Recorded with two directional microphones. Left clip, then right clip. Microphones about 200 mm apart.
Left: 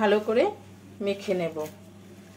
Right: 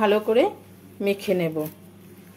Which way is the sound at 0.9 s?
45° right (ahead or behind).